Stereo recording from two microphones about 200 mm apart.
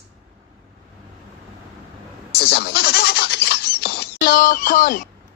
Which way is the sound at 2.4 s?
55° left (ahead or behind).